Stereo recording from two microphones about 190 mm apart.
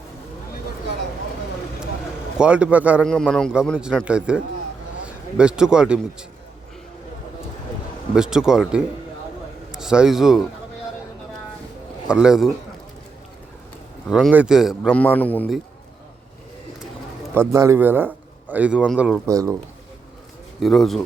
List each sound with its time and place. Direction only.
2.4 s a man's voice: 5° right (ahead or behind)
3.0 s a man's voice: 5° left (ahead or behind)
8.1 s a man's voice: 5° right (ahead or behind)
12.0 s a man's voice: 5° right (ahead or behind)
14.1 s a man's voice: 5° right (ahead or behind)
15.0 s a man's voice: 10° left (ahead or behind)
17.5 s a man's voice: 15° right (ahead or behind)
19.3 s a man's voice: 15° right (ahead or behind)
20.6 s a man's voice: centre (ahead or behind)